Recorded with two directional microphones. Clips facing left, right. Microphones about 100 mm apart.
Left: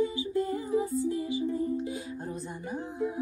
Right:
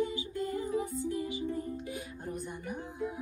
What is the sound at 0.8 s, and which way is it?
Music, 20° right (ahead or behind).